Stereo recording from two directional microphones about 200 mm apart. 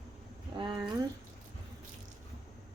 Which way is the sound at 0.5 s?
25° right (ahead or behind).